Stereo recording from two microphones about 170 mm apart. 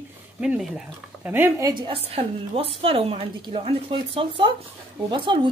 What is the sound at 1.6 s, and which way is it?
A woman's voice, 30° right (ahead or behind).